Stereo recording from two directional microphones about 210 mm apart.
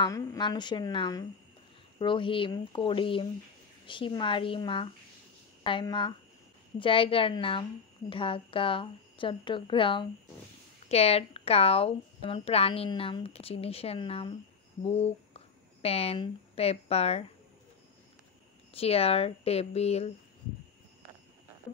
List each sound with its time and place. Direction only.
0.0 s speech: 20° left (ahead or behind)
18.7 s speech: 30° left (ahead or behind)